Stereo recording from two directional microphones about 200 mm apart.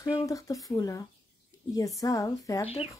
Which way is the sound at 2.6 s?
30° left (ahead or behind).